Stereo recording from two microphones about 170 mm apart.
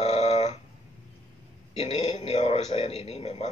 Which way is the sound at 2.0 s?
40° left (ahead or behind).